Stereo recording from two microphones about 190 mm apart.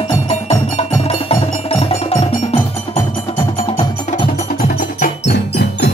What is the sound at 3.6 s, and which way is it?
Wood block, 30° left (ahead or behind).